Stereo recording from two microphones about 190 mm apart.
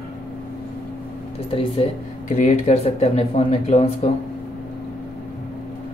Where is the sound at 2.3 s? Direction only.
40° left (ahead or behind).